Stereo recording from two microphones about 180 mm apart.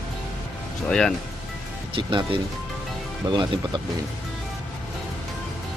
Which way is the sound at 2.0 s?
25° right (ahead or behind).